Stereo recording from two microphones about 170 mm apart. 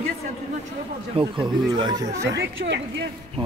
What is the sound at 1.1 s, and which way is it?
Speech, 30° right (ahead or behind).